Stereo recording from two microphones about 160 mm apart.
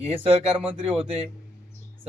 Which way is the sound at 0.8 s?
35° right (ahead or behind).